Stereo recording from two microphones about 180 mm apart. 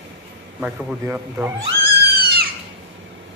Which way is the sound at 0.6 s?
10° right (ahead or behind).